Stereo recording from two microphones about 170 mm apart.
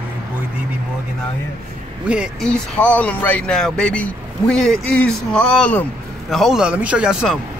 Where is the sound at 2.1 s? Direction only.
5° right (ahead or behind).